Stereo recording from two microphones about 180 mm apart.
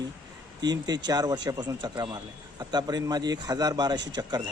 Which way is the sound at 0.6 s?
25° right (ahead or behind).